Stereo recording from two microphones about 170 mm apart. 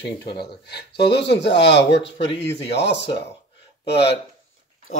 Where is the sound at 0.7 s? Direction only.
80° left.